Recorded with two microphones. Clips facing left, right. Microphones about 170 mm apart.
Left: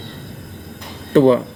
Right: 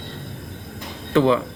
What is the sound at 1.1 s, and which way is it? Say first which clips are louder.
Speech: left 5 dB; 40° left (ahead or behind).